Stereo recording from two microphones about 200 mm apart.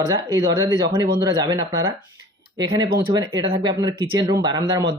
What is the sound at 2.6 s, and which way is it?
Speech, 20° right (ahead or behind).